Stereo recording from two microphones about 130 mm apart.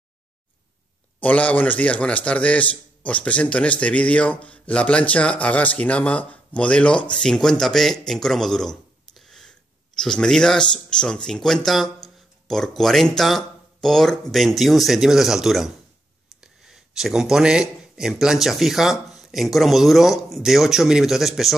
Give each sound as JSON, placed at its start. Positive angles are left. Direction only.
{"t": 1.2, "sound": "a man's voice", "side_deg": 10}